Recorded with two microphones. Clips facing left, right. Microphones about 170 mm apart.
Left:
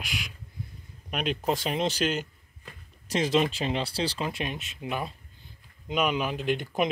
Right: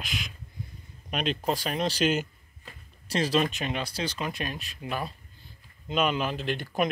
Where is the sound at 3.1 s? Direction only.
20° left (ahead or behind).